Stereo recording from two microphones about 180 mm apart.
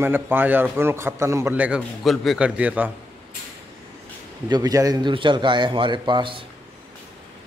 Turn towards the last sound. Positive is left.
turn(degrees=-30)  # may be behind; listen again after turning